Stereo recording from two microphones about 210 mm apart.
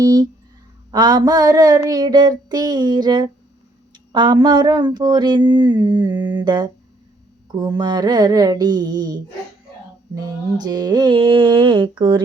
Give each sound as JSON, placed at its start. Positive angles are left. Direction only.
{"t": 0.0, "sound": "mantra", "side_deg": -20}
{"t": 0.9, "sound": "a sound", "side_deg": -20}
{"t": 1.9, "sound": "mantra", "side_deg": -20}
{"t": 10.2, "sound": "mantra", "side_deg": -20}